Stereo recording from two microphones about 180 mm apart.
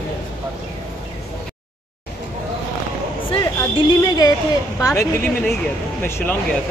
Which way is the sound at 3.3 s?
20° left (ahead or behind).